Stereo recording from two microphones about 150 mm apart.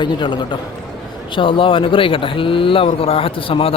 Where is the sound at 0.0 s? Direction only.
30° left (ahead or behind).